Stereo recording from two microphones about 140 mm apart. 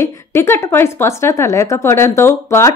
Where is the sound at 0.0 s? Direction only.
20° left (ahead or behind).